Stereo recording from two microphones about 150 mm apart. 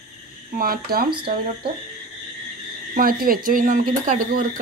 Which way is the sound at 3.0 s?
75° right (ahead or behind).